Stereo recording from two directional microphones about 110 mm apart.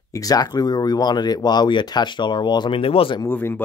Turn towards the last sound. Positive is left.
turn(degrees=20)  # may be behind; listen again after turning